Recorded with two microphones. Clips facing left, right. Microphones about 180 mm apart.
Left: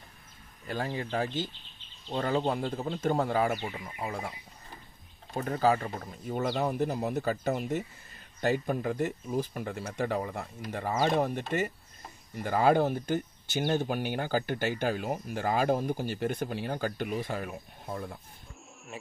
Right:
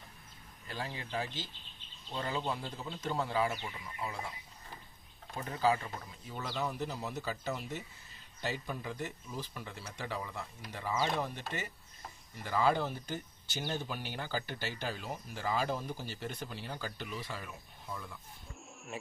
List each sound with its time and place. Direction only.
0.7 s speech: 50° left (ahead or behind)
5.3 s speech: 50° left (ahead or behind)